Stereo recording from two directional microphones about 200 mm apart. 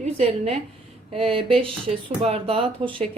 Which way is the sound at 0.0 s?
35° right (ahead or behind).